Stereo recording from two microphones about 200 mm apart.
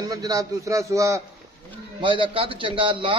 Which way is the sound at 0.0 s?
20° right (ahead or behind).